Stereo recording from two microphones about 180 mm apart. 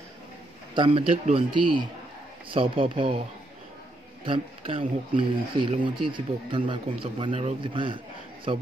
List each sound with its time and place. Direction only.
0.7 s speech: 30° right (ahead or behind)
4.2 s a man's voice: 30° right (ahead or behind)